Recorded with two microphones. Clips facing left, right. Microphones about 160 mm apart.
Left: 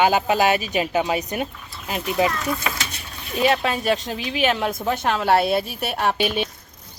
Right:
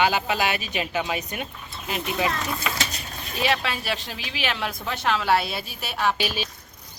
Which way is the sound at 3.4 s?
40° left (ahead or behind).